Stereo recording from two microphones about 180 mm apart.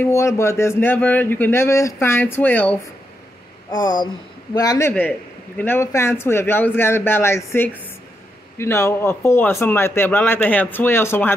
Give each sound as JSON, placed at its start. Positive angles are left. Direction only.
{"t": 0.0, "sound": "speech", "side_deg": 15}
{"t": 3.7, "sound": "speech", "side_deg": 25}